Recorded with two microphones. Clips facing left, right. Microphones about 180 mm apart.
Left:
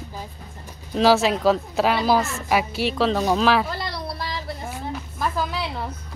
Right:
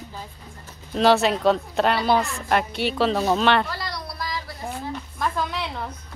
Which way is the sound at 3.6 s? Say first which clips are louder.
Left 3 dB; 25° left (ahead or behind).